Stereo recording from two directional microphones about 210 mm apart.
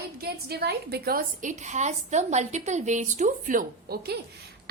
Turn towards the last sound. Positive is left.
turn(degrees=-45)  # may be behind; listen again after turning